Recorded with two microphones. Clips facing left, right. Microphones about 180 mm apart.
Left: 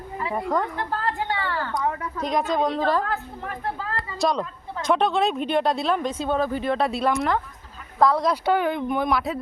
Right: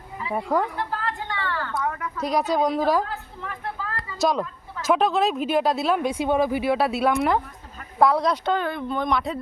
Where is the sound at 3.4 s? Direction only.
50° left (ahead or behind).